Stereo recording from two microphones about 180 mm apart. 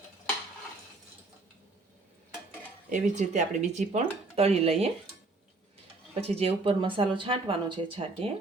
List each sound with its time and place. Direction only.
2.9 s speech: 40° right (ahead or behind)
6.1 s speech: 35° right (ahead or behind)